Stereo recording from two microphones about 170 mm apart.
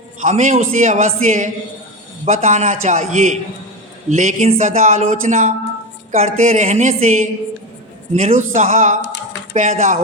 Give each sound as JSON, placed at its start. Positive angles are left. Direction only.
{"t": 0.2, "sound": "speech", "side_deg": -45}
{"t": 9.0, "sound": "a sound", "side_deg": 90}
{"t": 9.6, "sound": "speech", "side_deg": -45}